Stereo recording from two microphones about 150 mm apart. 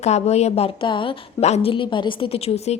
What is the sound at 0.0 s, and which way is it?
A woman's voice, 45° left (ahead or behind).